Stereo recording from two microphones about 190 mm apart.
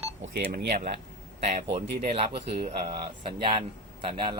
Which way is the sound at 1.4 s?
35° right (ahead or behind).